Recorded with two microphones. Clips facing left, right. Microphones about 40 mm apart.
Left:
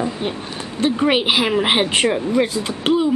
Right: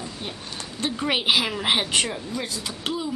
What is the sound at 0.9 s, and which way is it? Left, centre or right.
Speech, centre.